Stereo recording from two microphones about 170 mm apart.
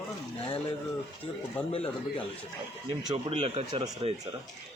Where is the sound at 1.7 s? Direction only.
35° left (ahead or behind).